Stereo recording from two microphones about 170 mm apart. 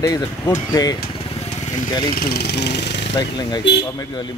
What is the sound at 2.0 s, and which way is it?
Speech, 65° left (ahead or behind).